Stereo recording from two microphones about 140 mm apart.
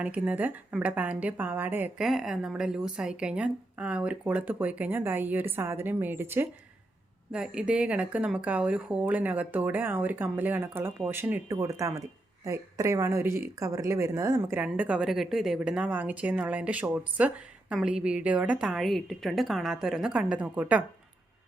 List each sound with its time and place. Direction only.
0.0 s speech: 10° right (ahead or behind)
2.0 s speech: centre (ahead or behind)
7.3 s a woman's voice: 5° right (ahead or behind)